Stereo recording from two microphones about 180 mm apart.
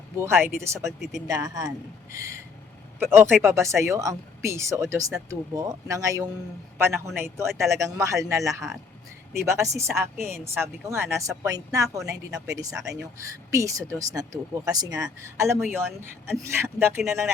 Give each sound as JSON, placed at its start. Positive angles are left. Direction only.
{"t": 0.2, "sound": "speech", "side_deg": -15}
{"t": 0.9, "sound": "speech", "side_deg": 0}
{"t": 1.3, "sound": "speech", "side_deg": -20}